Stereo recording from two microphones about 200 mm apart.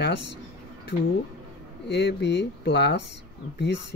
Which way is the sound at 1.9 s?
60° left (ahead or behind).